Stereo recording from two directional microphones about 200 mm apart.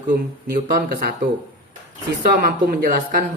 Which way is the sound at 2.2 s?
45° right (ahead or behind).